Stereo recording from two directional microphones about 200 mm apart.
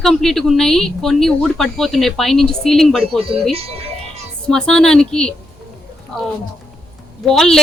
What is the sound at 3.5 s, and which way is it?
Speech, 30° right (ahead or behind).